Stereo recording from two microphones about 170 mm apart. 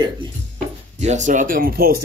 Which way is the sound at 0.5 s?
45° right (ahead or behind).